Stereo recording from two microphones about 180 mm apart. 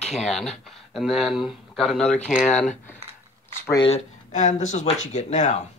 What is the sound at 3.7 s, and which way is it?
Speech, 35° left (ahead or behind).